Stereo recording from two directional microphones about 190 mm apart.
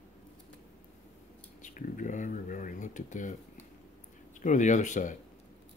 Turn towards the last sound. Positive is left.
turn(degrees=40)  # may be behind; listen again after turning